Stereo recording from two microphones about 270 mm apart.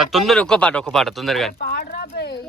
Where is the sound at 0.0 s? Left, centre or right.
Centre.